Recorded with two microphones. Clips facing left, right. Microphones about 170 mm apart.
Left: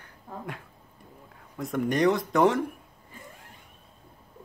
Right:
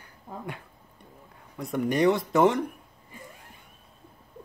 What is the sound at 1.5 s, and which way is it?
Speech, centre (ahead or behind).